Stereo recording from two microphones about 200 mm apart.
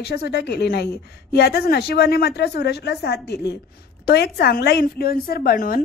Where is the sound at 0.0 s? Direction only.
55° left (ahead or behind).